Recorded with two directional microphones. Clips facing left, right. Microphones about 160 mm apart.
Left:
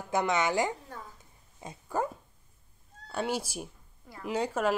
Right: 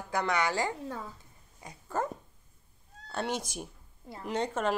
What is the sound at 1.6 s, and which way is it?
Dog, 25° left (ahead or behind).